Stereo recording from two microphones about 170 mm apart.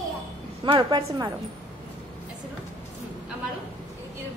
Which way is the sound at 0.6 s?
25° right (ahead or behind).